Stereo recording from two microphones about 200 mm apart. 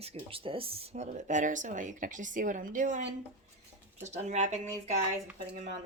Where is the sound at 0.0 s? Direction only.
30° right (ahead or behind).